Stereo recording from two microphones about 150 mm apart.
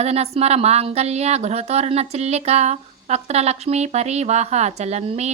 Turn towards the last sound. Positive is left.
turn(degrees=-45)  # may be behind; listen again after turning